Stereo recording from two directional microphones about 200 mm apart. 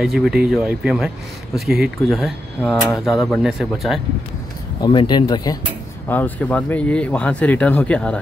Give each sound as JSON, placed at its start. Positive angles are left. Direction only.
{"t": 0.0, "sound": "a man's voice", "side_deg": 0}
{"t": 4.8, "sound": "speech", "side_deg": 25}
{"t": 6.0, "sound": "speech", "side_deg": 10}